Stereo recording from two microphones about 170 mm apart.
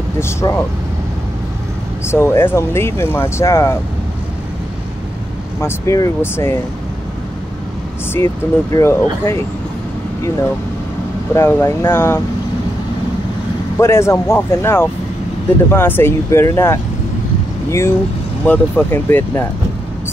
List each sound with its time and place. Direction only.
0.2 s speech: 15° left (ahead or behind)
2.0 s speech: 15° left (ahead or behind)
5.6 s speech: 15° left (ahead or behind)
8.7 s speech: 15° left (ahead or behind)
11.3 s speech: 15° left (ahead or behind)
13.7 s speech: 15° left (ahead or behind)